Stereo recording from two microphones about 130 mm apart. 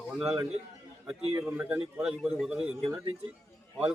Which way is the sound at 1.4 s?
15° right (ahead or behind).